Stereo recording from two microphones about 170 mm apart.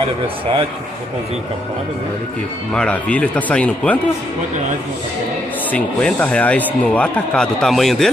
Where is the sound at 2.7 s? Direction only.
5° left (ahead or behind).